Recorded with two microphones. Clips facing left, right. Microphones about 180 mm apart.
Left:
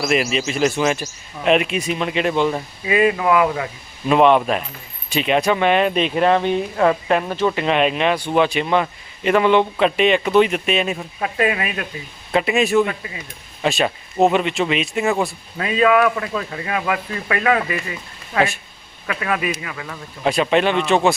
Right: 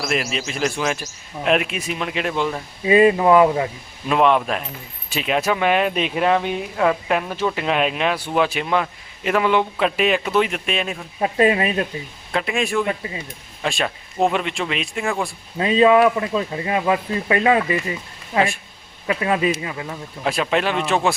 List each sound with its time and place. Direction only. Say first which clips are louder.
0.0 s speech: left 4 dB; centre (ahead or behind)
2.8 s speech: right 4 dB; 30° right (ahead or behind)
4.1 s speech: left 3 dB; centre (ahead or behind)
11.2 s speech: right 4 dB; 30° right (ahead or behind)
12.3 s speech: left 5 dB; 5° left (ahead or behind)
12.9 s speech: right 4 dB; 30° right (ahead or behind)
13.6 s speech: left 4 dB; 5° left (ahead or behind)
15.5 s speech: right 2 dB; 25° right (ahead or behind)
20.2 s speech: left 4 dB; centre (ahead or behind)